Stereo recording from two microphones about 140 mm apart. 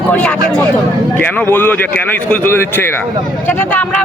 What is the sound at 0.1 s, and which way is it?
Speech, 10° left (ahead or behind).